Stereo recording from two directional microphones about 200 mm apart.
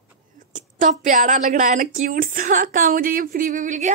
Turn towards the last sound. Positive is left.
turn(degrees=-40)  # may be behind; listen again after turning